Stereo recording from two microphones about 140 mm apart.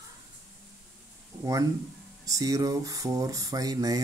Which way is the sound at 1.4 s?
25° right (ahead or behind).